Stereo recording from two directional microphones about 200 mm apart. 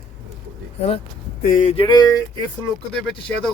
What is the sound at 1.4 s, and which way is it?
Speech, 40° left (ahead or behind).